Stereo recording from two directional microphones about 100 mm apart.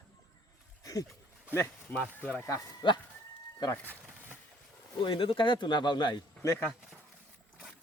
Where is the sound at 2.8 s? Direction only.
50° left (ahead or behind).